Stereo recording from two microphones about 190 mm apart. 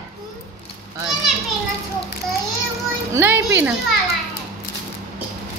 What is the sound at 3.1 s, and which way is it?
Speech, 10° right (ahead or behind).